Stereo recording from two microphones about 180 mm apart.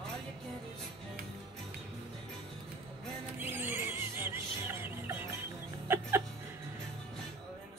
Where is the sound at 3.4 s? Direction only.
10° right (ahead or behind).